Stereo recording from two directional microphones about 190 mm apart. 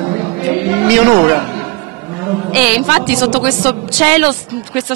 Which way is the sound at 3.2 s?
30° right (ahead or behind).